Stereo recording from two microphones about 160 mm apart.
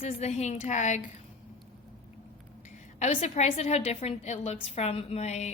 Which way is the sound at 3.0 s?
45° left (ahead or behind).